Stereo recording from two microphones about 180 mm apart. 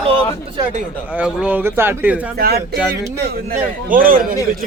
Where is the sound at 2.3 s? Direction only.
60° right (ahead or behind).